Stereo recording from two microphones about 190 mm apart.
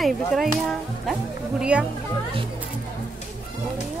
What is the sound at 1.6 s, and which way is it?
Speech, 5° right (ahead or behind).